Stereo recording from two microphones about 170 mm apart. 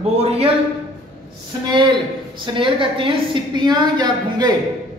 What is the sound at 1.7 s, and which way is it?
A woman's voice, 30° right (ahead or behind).